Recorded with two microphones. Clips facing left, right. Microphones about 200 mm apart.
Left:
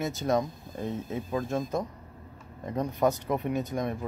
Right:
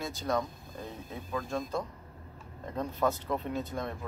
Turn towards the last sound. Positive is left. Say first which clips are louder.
# left 5 dB
turn(degrees=15)  # may be behind; listen again after turning